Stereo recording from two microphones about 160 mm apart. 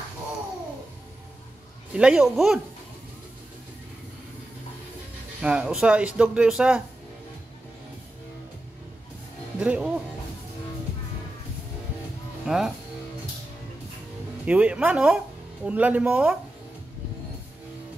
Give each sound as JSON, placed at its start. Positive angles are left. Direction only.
{"t": 2.0, "sound": "speech", "side_deg": -5}
{"t": 5.4, "sound": "speech", "side_deg": -5}
{"t": 9.6, "sound": "speech", "side_deg": -5}
{"t": 12.4, "sound": "speech", "side_deg": -5}
{"t": 14.4, "sound": "speech", "side_deg": -10}